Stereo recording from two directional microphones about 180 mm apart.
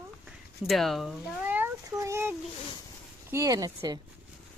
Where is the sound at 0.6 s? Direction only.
Centre (ahead or behind); by 2.3 s 15° right (ahead or behind).